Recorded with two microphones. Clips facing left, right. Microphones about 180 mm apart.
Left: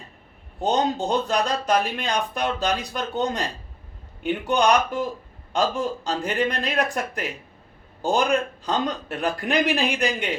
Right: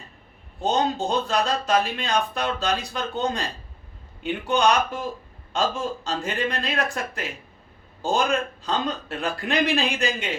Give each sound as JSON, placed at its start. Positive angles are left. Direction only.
{"t": 0.6, "sound": "a man's voice", "side_deg": 15}
{"t": 4.2, "sound": "a man's voice", "side_deg": 15}